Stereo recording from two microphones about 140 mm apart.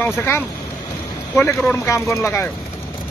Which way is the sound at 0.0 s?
15° left (ahead or behind).